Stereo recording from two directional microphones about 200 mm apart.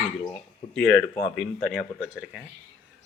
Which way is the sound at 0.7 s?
5° left (ahead or behind).